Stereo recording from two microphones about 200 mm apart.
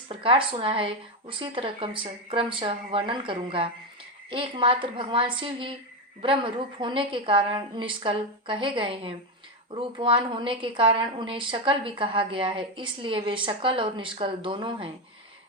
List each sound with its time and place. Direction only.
0.1 s a woman's voice: 25° right (ahead or behind)